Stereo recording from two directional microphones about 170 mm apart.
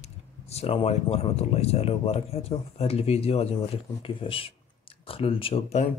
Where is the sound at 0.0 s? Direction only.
40° left (ahead or behind).